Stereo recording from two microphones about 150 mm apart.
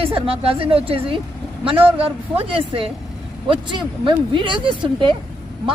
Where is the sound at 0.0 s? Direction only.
40° right (ahead or behind).